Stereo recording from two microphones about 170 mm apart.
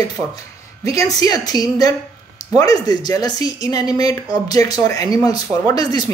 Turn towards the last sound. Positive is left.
turn(degrees=25)  # may be behind; listen again after turning